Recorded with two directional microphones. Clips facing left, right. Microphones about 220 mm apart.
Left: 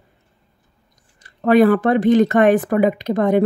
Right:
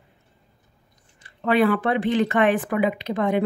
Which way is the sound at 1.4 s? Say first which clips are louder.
Left 7 dB; 45° left (ahead or behind).